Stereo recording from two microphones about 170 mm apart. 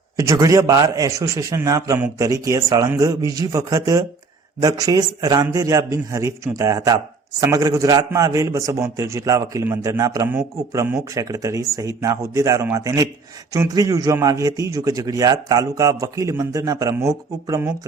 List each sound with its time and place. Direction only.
0.2 s a man's voice: 20° right (ahead or behind)